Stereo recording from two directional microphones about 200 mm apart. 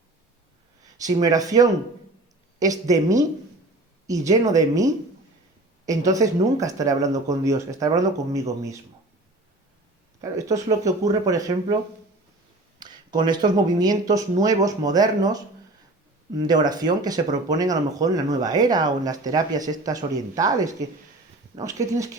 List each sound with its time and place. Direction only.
0.9 s speech: 20° right (ahead or behind)
10.2 s speech: 15° right (ahead or behind)
12.8 s speech: 20° right (ahead or behind)